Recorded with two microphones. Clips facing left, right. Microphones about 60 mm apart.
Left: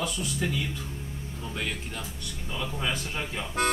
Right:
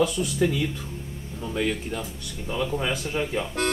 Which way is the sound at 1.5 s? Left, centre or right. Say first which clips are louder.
Right 8 dB; centre.